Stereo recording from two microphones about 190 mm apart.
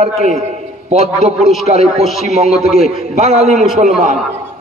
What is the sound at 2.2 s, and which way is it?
A man's voice, 35° right (ahead or behind).